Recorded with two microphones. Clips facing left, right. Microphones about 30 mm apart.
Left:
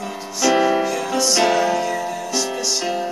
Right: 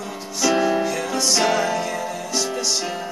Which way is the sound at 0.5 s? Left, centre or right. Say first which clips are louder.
Left 3 dB; centre.